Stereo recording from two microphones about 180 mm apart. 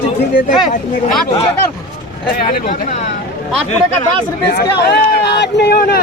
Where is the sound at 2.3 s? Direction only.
55° left (ahead or behind).